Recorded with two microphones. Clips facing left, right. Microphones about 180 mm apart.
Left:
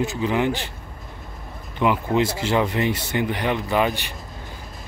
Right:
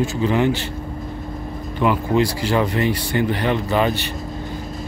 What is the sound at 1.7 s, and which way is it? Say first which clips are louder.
Speech: right 2 dB; 20° left (ahead or behind).